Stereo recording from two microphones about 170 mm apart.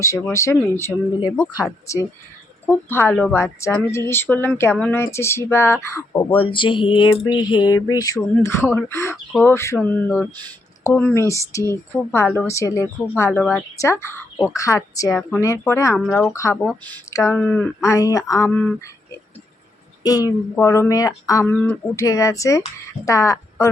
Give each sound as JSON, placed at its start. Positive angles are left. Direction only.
{"t": 0.0, "sound": "speech", "side_deg": 20}
{"t": 6.3, "sound": "a sound", "side_deg": 30}
{"t": 8.7, "sound": "speech", "side_deg": 15}
{"t": 14.5, "sound": "a sound", "side_deg": 20}
{"t": 15.3, "sound": "speech", "side_deg": 15}
{"t": 17.3, "sound": "speech", "side_deg": 5}
{"t": 17.8, "sound": "speech", "side_deg": 20}
{"t": 20.0, "sound": "a sound", "side_deg": 20}
{"t": 23.0, "sound": "speech", "side_deg": 20}